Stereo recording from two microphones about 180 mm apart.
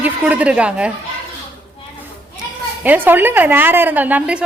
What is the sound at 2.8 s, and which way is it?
A woman's voice, 10° right (ahead or behind).